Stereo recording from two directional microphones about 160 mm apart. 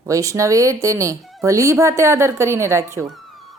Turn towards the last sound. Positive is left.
turn(degrees=-15)  # may be behind; listen again after turning